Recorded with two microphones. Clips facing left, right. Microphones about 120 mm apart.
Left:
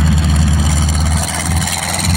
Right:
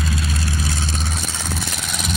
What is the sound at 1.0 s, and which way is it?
Vehicle, 90° left.